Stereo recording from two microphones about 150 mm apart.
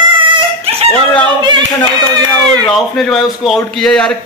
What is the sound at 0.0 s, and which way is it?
Dog, 35° right (ahead or behind).